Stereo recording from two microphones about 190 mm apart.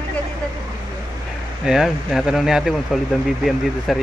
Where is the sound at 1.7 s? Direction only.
Centre (ahead or behind).